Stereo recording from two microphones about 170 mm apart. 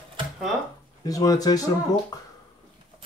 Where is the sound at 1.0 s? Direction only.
20° left (ahead or behind).